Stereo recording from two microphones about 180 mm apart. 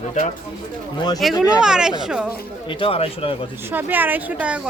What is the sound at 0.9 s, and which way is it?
Speech, 25° left (ahead or behind).